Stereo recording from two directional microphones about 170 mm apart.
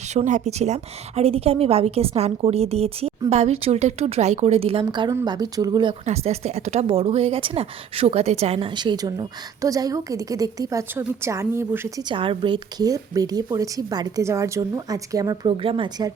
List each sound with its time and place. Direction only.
0.1 s a woman's voice: 45° right (ahead or behind); by 6.0 s 25° right (ahead or behind)
6.1 s a woman's voice: 40° right (ahead or behind); by 12.0 s 15° right (ahead or behind)
12.0 s a woman's voice: 30° right (ahead or behind)